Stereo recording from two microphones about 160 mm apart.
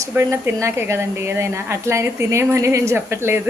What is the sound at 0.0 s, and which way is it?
Speech, 15° right (ahead or behind).